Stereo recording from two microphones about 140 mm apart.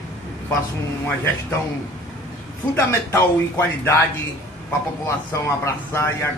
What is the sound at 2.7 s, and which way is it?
Speech, 15° left (ahead or behind).